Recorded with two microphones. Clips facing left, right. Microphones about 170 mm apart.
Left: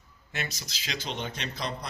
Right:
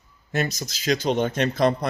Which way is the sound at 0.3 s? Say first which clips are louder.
Right 11 dB; 45° right (ahead or behind).